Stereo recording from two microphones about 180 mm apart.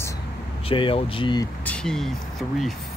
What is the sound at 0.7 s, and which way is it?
Speech, 30° left (ahead or behind).